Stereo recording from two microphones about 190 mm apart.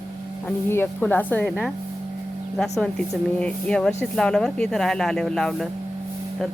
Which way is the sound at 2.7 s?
Centre (ahead or behind).